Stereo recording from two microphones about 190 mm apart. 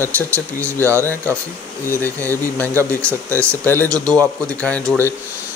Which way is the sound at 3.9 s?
15° right (ahead or behind).